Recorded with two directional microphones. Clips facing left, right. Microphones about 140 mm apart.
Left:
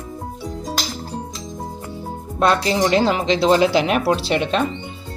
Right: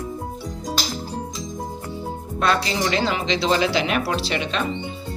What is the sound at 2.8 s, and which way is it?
Speech, 50° left (ahead or behind).